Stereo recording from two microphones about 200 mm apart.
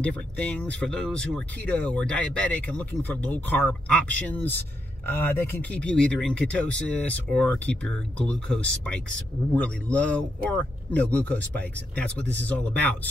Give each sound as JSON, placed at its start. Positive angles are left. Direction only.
{"t": 0.0, "sound": "speech", "side_deg": 5}